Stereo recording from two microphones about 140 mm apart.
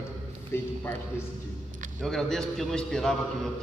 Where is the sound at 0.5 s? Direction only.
15° left (ahead or behind).